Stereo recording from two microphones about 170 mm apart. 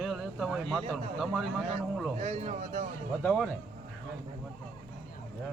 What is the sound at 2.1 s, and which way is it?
Speech, 40° right (ahead or behind).